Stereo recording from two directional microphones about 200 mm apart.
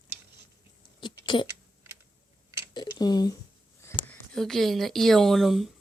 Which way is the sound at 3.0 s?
20° left (ahead or behind).